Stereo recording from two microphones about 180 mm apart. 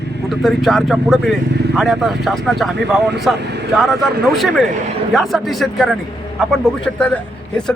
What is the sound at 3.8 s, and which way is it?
A man's voice, centre (ahead or behind).